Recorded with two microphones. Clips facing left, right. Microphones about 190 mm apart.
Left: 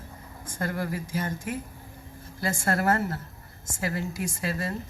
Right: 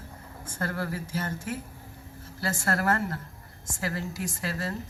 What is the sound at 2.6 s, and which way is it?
A woman's voice, 20° left (ahead or behind).